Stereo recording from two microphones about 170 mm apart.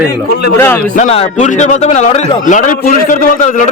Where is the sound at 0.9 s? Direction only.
40° left (ahead or behind).